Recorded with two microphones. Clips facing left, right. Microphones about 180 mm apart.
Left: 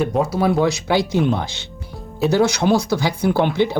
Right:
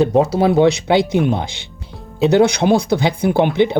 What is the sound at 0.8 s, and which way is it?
Speech, 20° right (ahead or behind).